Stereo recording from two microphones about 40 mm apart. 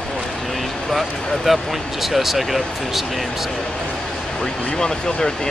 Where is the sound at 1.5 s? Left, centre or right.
Centre.